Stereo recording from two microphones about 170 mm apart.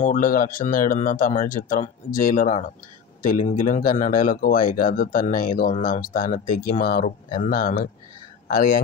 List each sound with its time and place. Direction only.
0.0 s speech: 50° left (ahead or behind)